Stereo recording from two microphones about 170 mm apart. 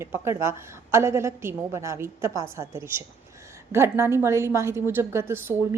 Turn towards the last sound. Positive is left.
turn(degrees=-15)  # may be behind; listen again after turning